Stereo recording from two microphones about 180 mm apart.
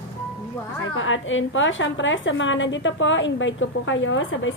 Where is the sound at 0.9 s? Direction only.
90° left.